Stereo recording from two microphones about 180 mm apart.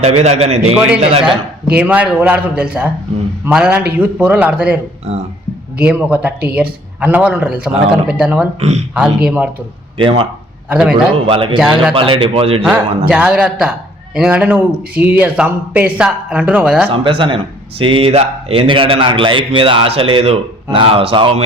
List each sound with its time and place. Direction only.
0.0 s a man's voice: 35° right (ahead or behind)
1.7 s a man's voice: 10° right (ahead or behind)
5.1 s a man's voice: 35° right (ahead or behind)
5.8 s a man's voice: 5° right (ahead or behind)
8.5 s a man's voice: 40° right (ahead or behind)
9.0 s a man's voice: 5° right (ahead or behind)
10.0 s a man's voice: 30° right (ahead or behind)
10.7 s a man's voice: 5° right (ahead or behind)
10.9 s a man's voice: 30° right (ahead or behind)
13.1 s a man's voice: 5° right (ahead or behind)
16.9 s speech: 30° right (ahead or behind)